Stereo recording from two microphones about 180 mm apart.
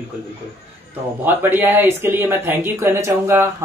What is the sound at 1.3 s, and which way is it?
Speech, 10° right (ahead or behind).